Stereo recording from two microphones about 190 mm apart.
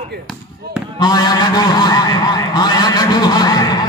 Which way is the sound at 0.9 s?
20° left (ahead or behind).